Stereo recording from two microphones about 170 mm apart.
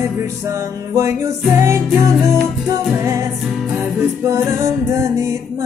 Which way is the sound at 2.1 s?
Centre (ahead or behind).